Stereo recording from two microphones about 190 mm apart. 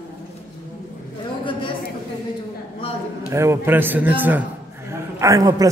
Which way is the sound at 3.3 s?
15° right (ahead or behind).